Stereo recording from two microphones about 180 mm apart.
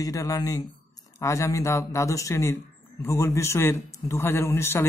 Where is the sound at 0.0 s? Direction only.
20° left (ahead or behind).